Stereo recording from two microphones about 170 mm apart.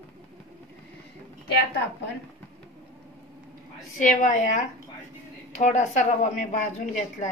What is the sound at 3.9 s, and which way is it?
A woman's voice, 45° left (ahead or behind).